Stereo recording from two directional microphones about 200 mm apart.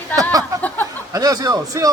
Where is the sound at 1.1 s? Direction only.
20° right (ahead or behind).